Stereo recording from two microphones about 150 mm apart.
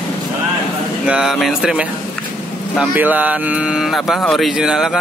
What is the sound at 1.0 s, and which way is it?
Speech, 5° right (ahead or behind).